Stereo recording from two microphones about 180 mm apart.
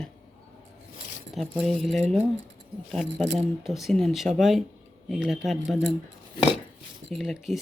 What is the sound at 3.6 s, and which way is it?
Speech, centre (ahead or behind).